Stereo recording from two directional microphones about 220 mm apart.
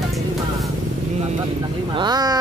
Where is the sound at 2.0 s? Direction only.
20° right (ahead or behind).